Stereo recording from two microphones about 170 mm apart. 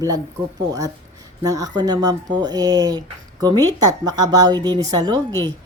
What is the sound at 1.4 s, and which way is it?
A woman's voice, 20° right (ahead or behind).